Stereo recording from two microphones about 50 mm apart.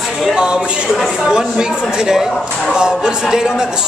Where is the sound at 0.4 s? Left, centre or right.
Centre.